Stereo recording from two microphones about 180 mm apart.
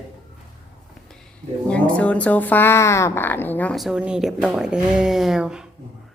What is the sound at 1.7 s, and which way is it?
Speech, 5° left (ahead or behind).